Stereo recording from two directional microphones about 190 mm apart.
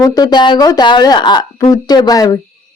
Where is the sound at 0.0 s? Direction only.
20° left (ahead or behind).